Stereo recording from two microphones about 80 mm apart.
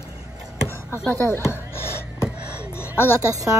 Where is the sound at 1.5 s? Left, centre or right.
Left.